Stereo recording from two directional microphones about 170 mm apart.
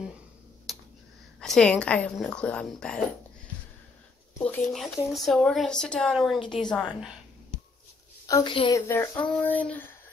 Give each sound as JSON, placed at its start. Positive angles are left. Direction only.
{"t": 0.7, "sound": "a sound", "side_deg": 0}
{"t": 1.4, "sound": "speech", "side_deg": 5}
{"t": 4.4, "sound": "speech", "side_deg": 5}
{"t": 6.4, "sound": "a woman's voice", "side_deg": 30}
{"t": 6.7, "sound": "speech", "side_deg": 0}
{"t": 8.3, "sound": "a woman's voice", "side_deg": 20}